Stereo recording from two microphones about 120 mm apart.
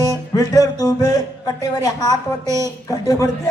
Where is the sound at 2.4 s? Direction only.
25° right (ahead or behind).